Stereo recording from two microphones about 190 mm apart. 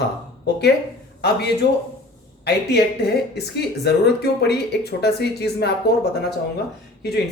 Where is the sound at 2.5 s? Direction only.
60° left (ahead or behind).